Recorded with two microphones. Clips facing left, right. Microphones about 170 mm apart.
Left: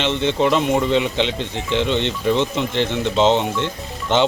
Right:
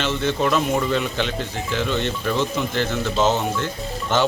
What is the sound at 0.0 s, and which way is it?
Speech, 20° left (ahead or behind).